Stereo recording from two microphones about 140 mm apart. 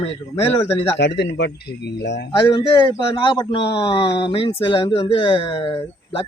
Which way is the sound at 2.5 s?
35° left (ahead or behind).